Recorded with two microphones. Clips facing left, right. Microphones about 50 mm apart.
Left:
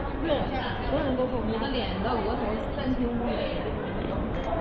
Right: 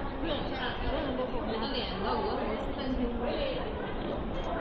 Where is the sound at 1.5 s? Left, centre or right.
Centre.